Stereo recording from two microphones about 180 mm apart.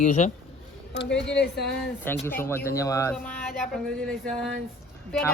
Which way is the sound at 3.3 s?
5° left (ahead or behind).